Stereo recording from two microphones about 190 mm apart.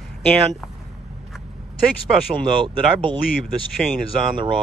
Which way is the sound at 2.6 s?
25° right (ahead or behind).